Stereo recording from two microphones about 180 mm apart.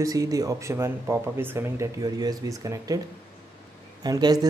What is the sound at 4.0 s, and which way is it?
Speech, 20° right (ahead or behind).